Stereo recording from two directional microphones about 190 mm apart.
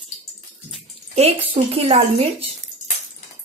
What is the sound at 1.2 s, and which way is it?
A woman's voice, 35° right (ahead or behind).